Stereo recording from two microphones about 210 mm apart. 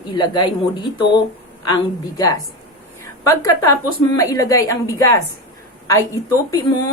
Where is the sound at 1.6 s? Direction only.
15° left (ahead or behind).